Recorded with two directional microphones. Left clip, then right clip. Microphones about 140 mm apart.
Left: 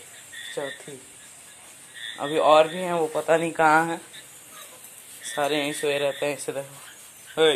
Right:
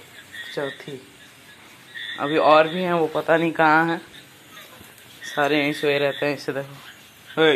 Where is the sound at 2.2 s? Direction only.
30° left (ahead or behind).